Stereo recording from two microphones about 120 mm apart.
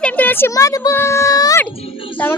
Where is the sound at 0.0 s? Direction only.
15° left (ahead or behind).